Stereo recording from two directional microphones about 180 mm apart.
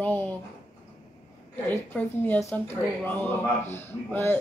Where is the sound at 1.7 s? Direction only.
10° left (ahead or behind).